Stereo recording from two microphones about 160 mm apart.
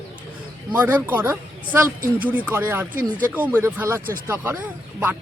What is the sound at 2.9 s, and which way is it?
Speech, 55° right (ahead or behind).